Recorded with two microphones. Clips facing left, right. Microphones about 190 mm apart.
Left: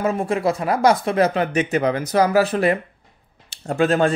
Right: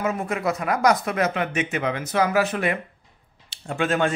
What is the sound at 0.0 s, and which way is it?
Speech, 30° left (ahead or behind).